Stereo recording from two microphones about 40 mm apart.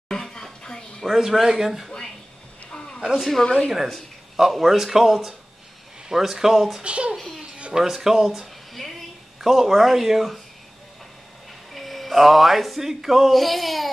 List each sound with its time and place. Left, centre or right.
0.1 s a sound: centre
1.0 s speech: centre
3.2 s speech: centre
3.4 s speech: left
4.5 s speech: centre
6.8 s a child's voice: right
7.2 s speech: centre
7.7 s speech: centre
11.7 s music: centre